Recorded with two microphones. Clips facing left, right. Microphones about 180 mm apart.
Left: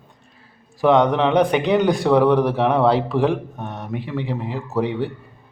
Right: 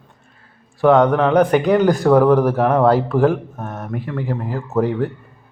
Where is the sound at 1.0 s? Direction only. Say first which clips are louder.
Right 2 dB; 15° left (ahead or behind).